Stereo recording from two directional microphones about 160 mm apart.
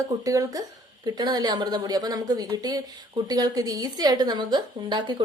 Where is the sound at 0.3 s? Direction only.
20° right (ahead or behind).